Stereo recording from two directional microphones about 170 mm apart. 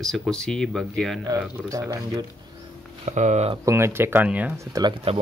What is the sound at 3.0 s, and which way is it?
Speech, 45° right (ahead or behind).